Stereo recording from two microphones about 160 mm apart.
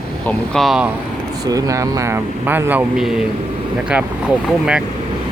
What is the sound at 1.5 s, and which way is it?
Speech, 20° right (ahead or behind).